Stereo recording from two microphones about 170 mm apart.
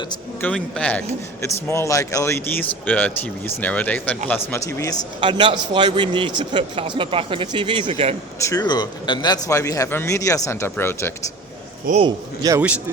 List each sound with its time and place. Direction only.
0.4 s a man's voice: 5° left (ahead or behind)
5.2 s a man's voice: 30° right (ahead or behind)
8.4 s speech: 20° left (ahead or behind)
12.0 s a man's voice: 20° right (ahead or behind)